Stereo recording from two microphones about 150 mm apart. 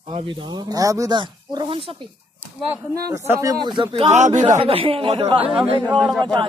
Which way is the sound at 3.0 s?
20° right (ahead or behind).